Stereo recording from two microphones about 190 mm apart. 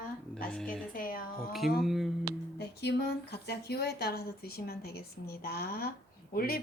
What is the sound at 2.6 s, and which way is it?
Speech, 60° left (ahead or behind).